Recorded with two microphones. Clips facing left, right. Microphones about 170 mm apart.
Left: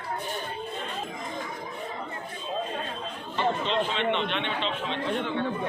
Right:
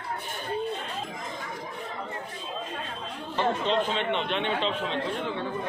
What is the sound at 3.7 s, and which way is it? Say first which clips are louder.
A man's voice: even; 40° right (ahead or behind).